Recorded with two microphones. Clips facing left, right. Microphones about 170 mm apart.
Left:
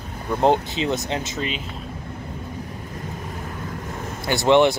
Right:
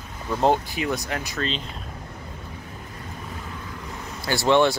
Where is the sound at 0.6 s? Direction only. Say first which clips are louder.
Left 3 dB; 20° left (ahead or behind).